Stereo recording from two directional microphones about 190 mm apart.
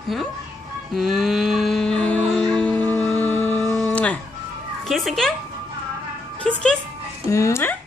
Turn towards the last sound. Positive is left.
turn(degrees=15)  # may be behind; listen again after turning